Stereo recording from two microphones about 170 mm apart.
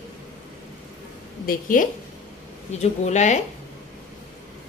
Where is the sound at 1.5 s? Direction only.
50° left (ahead or behind).